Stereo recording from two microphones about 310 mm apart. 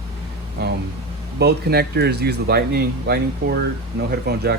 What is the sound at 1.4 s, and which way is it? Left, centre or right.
Speech, right.